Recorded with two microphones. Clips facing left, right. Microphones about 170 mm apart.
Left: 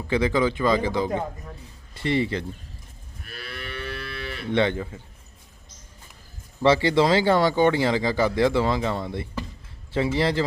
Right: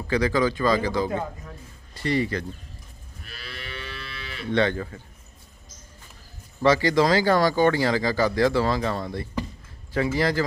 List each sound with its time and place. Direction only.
0.1 s speech: 20° left (ahead or behind)
3.2 s moo: 55° left (ahead or behind)
4.5 s speech: 20° left (ahead or behind)
6.6 s speech: 25° left (ahead or behind)